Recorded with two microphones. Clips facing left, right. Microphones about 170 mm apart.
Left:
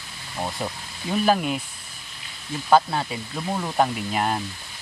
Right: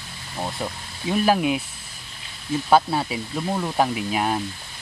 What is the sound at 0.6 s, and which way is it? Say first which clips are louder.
Speech: right 1 dB; 5° left (ahead or behind).